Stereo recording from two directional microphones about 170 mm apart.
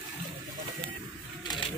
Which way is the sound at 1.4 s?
25° left (ahead or behind).